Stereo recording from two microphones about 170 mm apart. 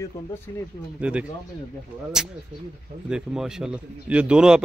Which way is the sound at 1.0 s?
10° right (ahead or behind).